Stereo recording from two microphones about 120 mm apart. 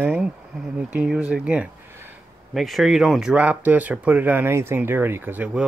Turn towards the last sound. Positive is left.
turn(degrees=-15)  # may be behind; listen again after turning